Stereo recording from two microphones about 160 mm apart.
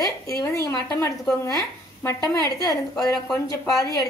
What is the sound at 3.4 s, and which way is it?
Speech, 20° left (ahead or behind).